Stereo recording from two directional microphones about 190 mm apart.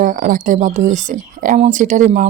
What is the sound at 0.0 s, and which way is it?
Speech, 45° right (ahead or behind).